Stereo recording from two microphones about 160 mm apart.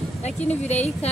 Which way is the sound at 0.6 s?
45° left (ahead or behind).